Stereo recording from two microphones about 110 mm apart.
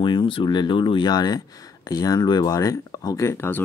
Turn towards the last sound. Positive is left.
turn(degrees=25)  # may be behind; listen again after turning